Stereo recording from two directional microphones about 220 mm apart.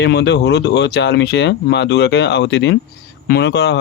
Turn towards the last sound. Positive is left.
turn(degrees=50)  # may be behind; listen again after turning